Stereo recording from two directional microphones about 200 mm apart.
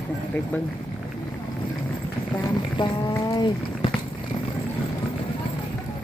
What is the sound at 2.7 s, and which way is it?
Speech, 20° left (ahead or behind).